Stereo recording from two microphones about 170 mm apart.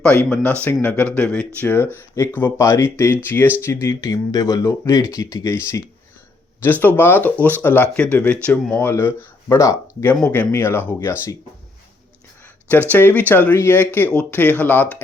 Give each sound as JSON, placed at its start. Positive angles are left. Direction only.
{"t": 0.0, "sound": "speech", "side_deg": 5}
{"t": 6.6, "sound": "speech", "side_deg": 10}
{"t": 12.9, "sound": "speech", "side_deg": 10}